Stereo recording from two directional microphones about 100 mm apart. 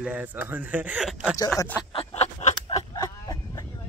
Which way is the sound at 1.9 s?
80° left.